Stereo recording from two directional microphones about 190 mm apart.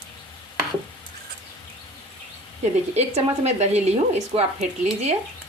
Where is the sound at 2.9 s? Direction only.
35° right (ahead or behind).